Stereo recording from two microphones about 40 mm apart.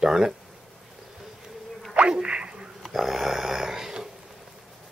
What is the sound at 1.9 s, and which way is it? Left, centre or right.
Insect, right.